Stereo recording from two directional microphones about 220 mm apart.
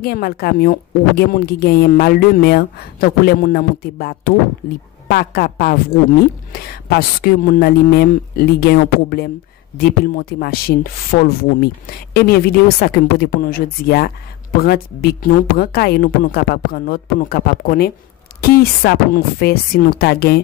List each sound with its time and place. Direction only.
0.0 s a woman's voice: 45° left (ahead or behind)